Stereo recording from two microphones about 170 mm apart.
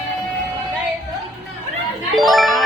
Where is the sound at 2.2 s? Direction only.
Centre (ahead or behind).